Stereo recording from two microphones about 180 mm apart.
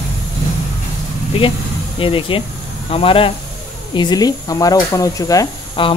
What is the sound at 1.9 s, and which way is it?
Speech, 30° left (ahead or behind).